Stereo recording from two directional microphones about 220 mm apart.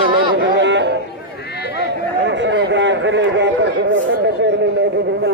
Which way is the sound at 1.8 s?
55° right (ahead or behind).